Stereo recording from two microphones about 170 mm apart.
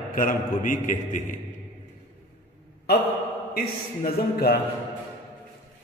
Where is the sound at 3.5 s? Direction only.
65° left (ahead or behind).